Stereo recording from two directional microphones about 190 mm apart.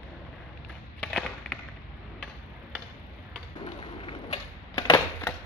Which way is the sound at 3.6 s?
30° left (ahead or behind).